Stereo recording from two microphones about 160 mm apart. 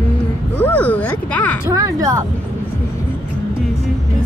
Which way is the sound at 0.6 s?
10° left (ahead or behind).